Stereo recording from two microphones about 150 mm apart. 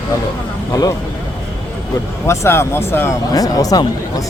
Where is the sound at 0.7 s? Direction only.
25° left (ahead or behind).